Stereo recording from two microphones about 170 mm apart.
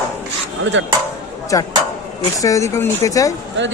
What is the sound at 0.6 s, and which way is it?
Dishes, 90° right.